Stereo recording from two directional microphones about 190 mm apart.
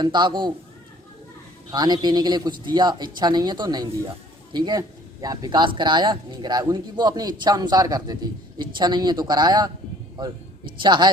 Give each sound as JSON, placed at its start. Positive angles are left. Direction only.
{"t": 0.0, "sound": "speech", "side_deg": -25}
{"t": 1.7, "sound": "speech", "side_deg": -20}
{"t": 10.8, "sound": "speech", "side_deg": -25}